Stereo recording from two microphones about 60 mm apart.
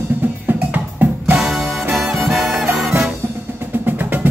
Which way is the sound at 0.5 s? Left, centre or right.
Right.